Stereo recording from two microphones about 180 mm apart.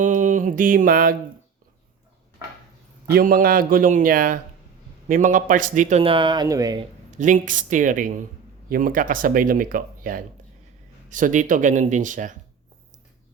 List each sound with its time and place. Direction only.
0.0 s a sound: 45° right (ahead or behind)
3.1 s speech: 55° right (ahead or behind)
6.0 s speech: 30° right (ahead or behind)
7.1 s speech: 45° right (ahead or behind)